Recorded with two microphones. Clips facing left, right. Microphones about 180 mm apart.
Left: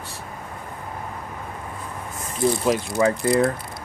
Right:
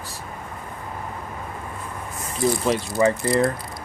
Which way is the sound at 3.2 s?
Centre (ahead or behind).